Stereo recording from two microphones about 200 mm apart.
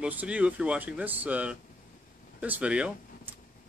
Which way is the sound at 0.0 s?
5° right (ahead or behind).